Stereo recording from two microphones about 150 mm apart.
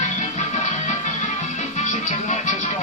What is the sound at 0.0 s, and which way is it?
Music, 50° left (ahead or behind).